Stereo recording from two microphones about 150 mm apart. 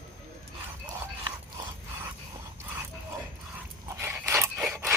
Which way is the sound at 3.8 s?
15° right (ahead or behind).